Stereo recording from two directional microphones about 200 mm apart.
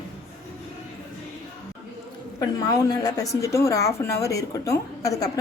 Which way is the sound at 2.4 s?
20° left (ahead or behind).